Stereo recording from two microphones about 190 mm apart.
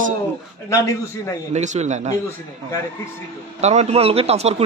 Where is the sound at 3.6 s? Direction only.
35° right (ahead or behind).